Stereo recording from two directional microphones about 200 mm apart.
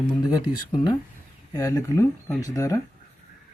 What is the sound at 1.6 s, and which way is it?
Speech, 15° left (ahead or behind).